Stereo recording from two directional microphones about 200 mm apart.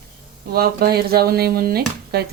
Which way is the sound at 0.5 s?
50° right (ahead or behind).